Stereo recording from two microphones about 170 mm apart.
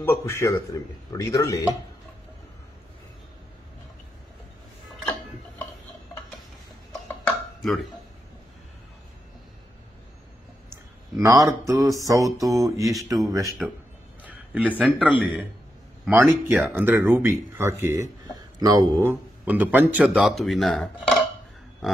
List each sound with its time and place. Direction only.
0.0 s a man's voice: 15° left (ahead or behind)
10.7 s speech: 20° right (ahead or behind)
12.0 s a sound: 20° right (ahead or behind)
13.6 s a man's voice: centre (ahead or behind)
14.2 s a sound: 10° right (ahead or behind)
14.8 s a man's voice: centre (ahead or behind)